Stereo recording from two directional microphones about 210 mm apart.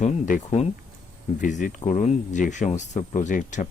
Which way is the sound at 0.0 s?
35° left (ahead or behind).